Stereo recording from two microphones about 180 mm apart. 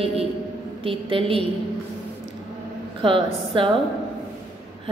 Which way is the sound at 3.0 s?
30° right (ahead or behind).